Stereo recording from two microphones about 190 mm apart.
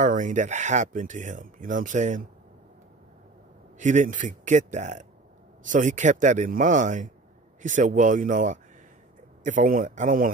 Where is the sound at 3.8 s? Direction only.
40° right (ahead or behind).